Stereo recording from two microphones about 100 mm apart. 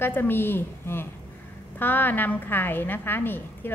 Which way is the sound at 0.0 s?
20° left (ahead or behind).